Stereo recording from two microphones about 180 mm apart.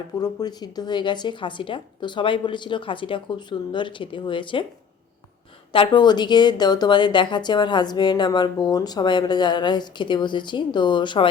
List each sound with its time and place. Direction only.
0.2 s a woman's voice: 20° left (ahead or behind)
5.7 s a woman's voice: 25° left (ahead or behind)